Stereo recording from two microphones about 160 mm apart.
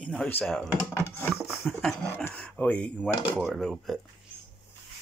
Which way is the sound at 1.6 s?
5° left (ahead or behind).